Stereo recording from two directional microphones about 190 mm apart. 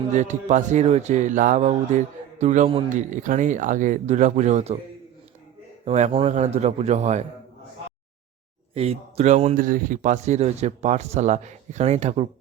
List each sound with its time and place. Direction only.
0.1 s a man's voice: 40° right (ahead or behind)
5.8 s a man's voice: 35° right (ahead or behind)
8.7 s a man's voice: 30° right (ahead or behind)